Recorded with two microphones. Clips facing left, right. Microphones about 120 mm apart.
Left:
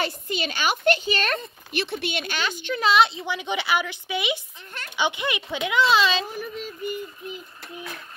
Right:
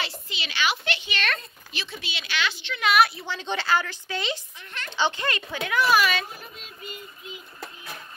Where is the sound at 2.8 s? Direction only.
25° left (ahead or behind).